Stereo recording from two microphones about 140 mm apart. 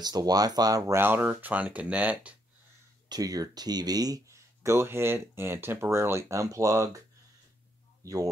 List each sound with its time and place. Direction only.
0.0 s speech: 25° right (ahead or behind); by 2.3 s 10° right (ahead or behind)
3.1 s speech: 25° right (ahead or behind)
8.0 s speech: 25° right (ahead or behind)